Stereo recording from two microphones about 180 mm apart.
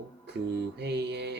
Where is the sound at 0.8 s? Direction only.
70° right (ahead or behind).